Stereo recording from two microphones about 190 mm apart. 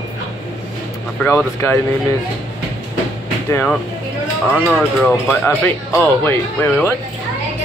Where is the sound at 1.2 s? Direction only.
10° left (ahead or behind).